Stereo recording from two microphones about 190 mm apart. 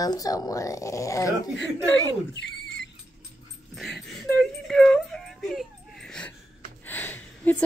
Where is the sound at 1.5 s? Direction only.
70° left (ahead or behind).